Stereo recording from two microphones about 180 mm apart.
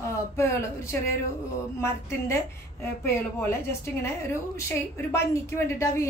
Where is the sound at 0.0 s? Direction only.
15° left (ahead or behind).